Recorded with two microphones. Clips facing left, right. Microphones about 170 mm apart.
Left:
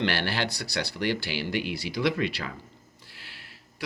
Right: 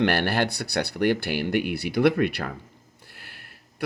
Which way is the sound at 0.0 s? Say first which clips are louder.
Right 5 dB; 55° right (ahead or behind).